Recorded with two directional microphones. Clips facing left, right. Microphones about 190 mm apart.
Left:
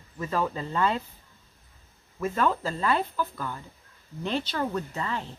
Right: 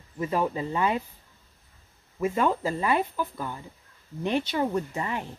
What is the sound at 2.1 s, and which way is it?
Speech, 10° right (ahead or behind).